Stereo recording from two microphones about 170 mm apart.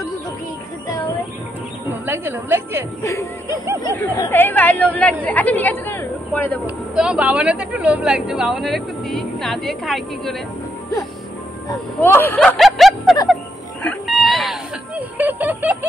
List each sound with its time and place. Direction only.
2.0 s a woman's voice: 15° right (ahead or behind)
3.0 s speech: 15° left (ahead or behind)
6.6 s speech: 5° right (ahead or behind)
12.0 s speech: 10° left (ahead or behind)
13.8 s a sound: centre (ahead or behind)